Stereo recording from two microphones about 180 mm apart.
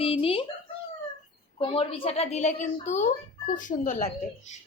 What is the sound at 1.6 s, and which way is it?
A woman's voice, 30° left (ahead or behind).